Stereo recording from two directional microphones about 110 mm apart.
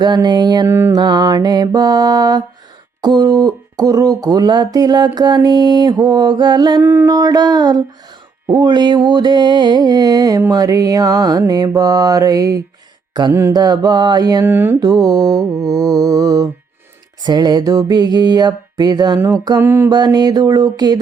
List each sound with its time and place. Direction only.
0.0 s speech: 40° right (ahead or behind)
0.7 s mantra: 20° right (ahead or behind)
0.9 s speech: 40° right (ahead or behind)
6.8 s mantra: 20° right (ahead or behind)
7.1 s speech: 35° right (ahead or behind)
14.4 s mantra: 20° right (ahead or behind)
14.8 s speech: 35° right (ahead or behind)
19.6 s mantra: 20° right (ahead or behind)
19.9 s speech: 40° right (ahead or behind)